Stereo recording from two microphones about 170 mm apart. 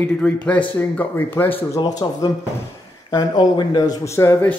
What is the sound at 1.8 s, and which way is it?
A man's voice, 25° left (ahead or behind).